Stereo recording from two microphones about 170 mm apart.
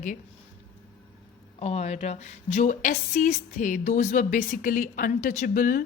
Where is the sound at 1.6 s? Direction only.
40° left (ahead or behind).